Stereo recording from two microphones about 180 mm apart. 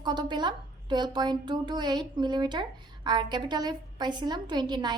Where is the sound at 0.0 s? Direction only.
25° right (ahead or behind).